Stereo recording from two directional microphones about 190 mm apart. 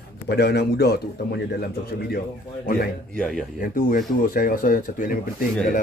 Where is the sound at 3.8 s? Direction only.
45° left (ahead or behind).